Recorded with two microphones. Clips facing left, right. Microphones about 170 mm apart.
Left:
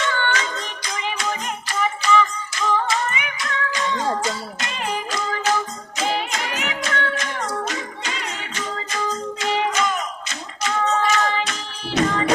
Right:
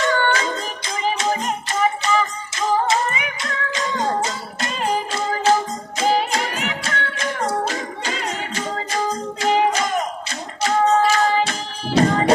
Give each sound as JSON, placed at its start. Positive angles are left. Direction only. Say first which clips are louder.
{"t": 0.0, "sound": "music", "louder": "right 4 dB", "side_deg": -40}